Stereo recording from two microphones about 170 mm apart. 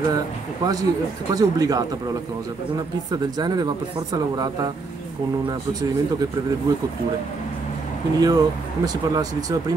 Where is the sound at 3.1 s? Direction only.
25° right (ahead or behind).